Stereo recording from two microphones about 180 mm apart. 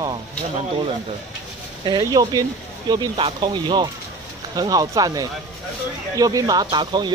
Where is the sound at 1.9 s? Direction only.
20° right (ahead or behind).